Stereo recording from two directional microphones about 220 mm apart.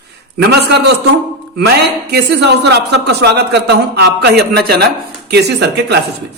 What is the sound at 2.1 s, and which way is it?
A man's voice, 50° right (ahead or behind).